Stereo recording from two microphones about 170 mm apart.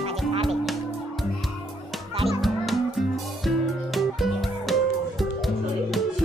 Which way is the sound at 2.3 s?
Centre (ahead or behind).